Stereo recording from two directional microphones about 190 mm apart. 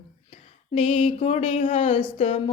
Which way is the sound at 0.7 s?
35° left (ahead or behind).